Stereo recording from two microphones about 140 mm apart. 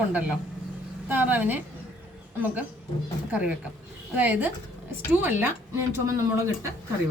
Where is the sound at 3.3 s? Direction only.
10° right (ahead or behind).